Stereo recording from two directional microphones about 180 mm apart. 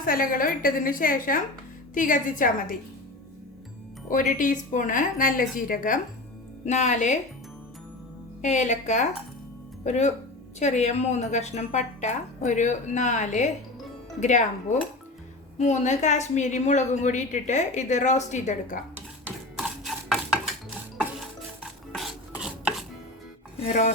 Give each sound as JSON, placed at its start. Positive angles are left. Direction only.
{"t": 0.0, "sound": "a woman's voice", "side_deg": 50}
{"t": 4.1, "sound": "a woman's voice", "side_deg": 45}
{"t": 6.7, "sound": "a woman's voice", "side_deg": 40}
{"t": 8.4, "sound": "a woman's voice", "side_deg": 40}
{"t": 19.5, "sound": "stir", "side_deg": 0}
{"t": 21.6, "sound": "filing", "side_deg": -5}